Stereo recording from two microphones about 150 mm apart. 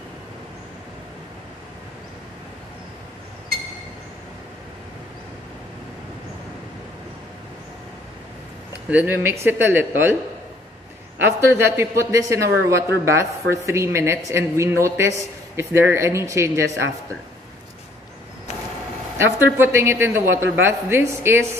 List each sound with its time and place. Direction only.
8.9 s a man's voice: 15° right (ahead or behind)
11.4 s a woman's voice: 15° right (ahead or behind)
19.1 s a man's voice: 15° right (ahead or behind)